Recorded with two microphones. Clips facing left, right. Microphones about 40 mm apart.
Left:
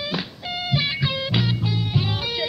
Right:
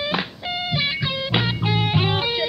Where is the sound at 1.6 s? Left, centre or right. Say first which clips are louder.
Right 4 dB; right.